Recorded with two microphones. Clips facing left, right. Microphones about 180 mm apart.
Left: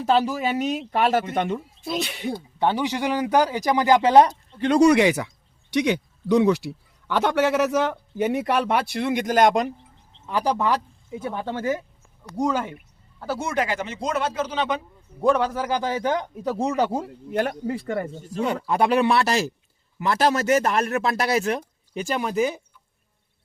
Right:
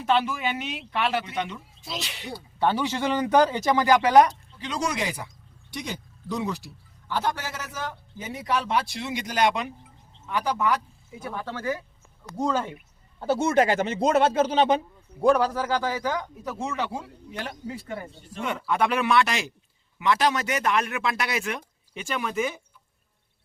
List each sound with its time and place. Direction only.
0.0 s speech: 35° left (ahead or behind); by 2.3 s 55° left (ahead or behind)
2.3 s speech: 15° left (ahead or behind)
4.5 s a man's voice: 55° left (ahead or behind); by 10.8 s 35° left (ahead or behind)
11.2 s speech: 20° left (ahead or behind)
12.4 s speech: 10° left (ahead or behind)
13.1 s speech: 25° right (ahead or behind)
15.5 s speech: 15° left (ahead or behind); by 18.1 s 80° left
18.1 s speech: 40° left (ahead or behind)